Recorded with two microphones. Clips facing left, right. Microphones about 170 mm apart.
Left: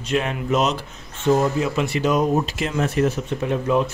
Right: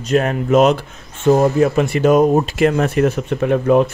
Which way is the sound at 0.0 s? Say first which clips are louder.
Right 6 dB; 45° right (ahead or behind).